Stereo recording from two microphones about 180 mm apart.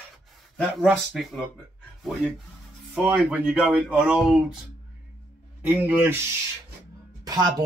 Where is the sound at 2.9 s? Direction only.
5° right (ahead or behind).